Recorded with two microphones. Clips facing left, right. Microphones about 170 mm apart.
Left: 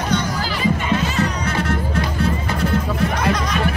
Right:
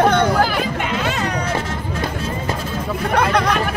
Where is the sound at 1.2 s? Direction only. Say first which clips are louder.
Even; 65° left (ahead or behind).